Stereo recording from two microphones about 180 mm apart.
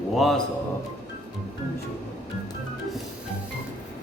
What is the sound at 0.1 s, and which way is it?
Speech, centre (ahead or behind).